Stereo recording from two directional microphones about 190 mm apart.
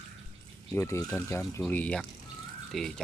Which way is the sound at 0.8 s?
15° left (ahead or behind).